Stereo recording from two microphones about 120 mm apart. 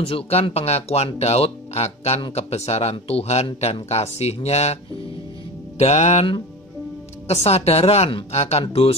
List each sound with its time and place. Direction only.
0.0 s speech: 55° left (ahead or behind)
5.8 s music: 70° left (ahead or behind)
7.2 s speech: 60° left (ahead or behind)